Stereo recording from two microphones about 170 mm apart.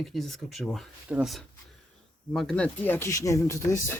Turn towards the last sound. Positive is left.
turn(degrees=15)  # may be behind; listen again after turning